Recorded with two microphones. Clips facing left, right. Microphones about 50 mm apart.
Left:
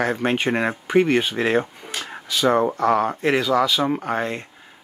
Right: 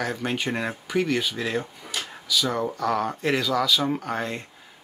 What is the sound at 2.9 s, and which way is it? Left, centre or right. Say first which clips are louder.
Speech: left 3 dB; left.